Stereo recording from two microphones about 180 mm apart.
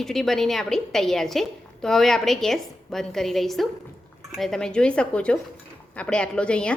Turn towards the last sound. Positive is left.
turn(degrees=5)  # may be behind; listen again after turning